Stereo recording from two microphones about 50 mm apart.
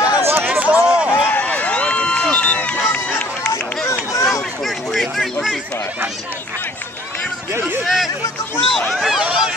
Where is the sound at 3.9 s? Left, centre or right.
Left.